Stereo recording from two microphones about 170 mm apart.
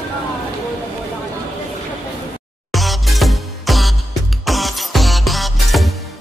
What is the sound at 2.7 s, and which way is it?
Music, centre (ahead or behind).